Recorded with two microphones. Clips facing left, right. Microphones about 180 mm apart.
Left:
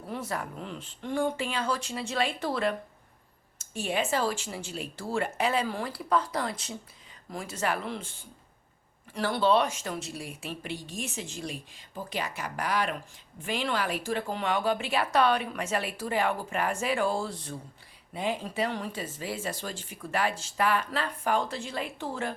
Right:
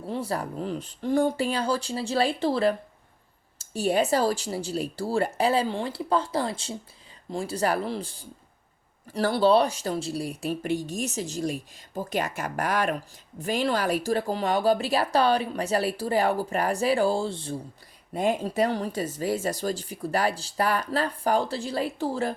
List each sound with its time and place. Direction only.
0.1 s speech: 30° right (ahead or behind)
18.1 s speech: 45° right (ahead or behind)